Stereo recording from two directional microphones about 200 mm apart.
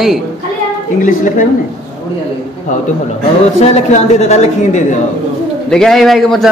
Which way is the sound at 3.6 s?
35° left (ahead or behind).